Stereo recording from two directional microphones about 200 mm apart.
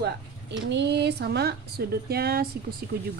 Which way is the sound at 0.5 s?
60° right (ahead or behind).